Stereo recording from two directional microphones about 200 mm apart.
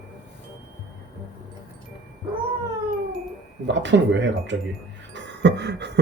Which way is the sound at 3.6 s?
65° right (ahead or behind).